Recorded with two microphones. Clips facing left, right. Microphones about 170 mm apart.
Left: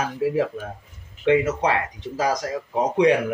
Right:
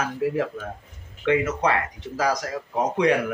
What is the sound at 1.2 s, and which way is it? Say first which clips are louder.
Speech: left 2 dB; 20° left (ahead or behind).